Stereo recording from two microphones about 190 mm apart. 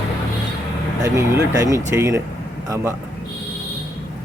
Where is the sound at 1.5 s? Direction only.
15° right (ahead or behind).